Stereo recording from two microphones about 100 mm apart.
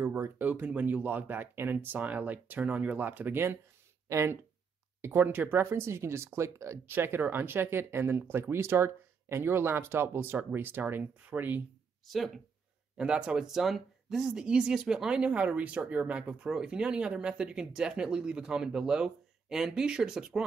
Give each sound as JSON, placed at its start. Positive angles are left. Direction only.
{"t": 0.0, "sound": "speech", "side_deg": -25}
{"t": 12.9, "sound": "speech", "side_deg": -10}